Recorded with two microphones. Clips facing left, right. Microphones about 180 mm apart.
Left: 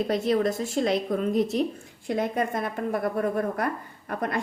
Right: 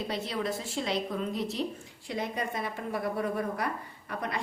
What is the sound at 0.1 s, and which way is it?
A woman's voice, 50° left (ahead or behind).